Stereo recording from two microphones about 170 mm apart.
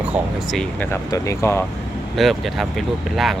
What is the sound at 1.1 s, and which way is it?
Speech, 20° left (ahead or behind).